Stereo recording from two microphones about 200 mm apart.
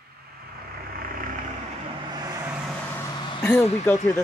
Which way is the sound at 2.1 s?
15° right (ahead or behind).